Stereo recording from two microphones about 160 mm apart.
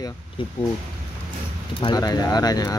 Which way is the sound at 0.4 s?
30° left (ahead or behind).